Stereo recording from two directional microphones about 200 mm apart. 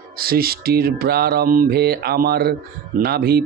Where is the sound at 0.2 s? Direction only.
50° right (ahead or behind).